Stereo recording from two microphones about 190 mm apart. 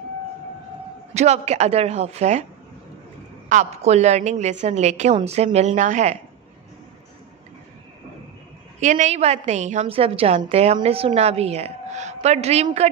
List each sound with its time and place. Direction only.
1.1 s a woman's voice: 35° right (ahead or behind)
3.4 s a woman's voice: 40° right (ahead or behind)
8.7 s a woman's voice: 40° right (ahead or behind)